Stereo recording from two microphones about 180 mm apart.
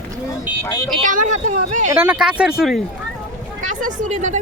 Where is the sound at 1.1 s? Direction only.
45° right (ahead or behind).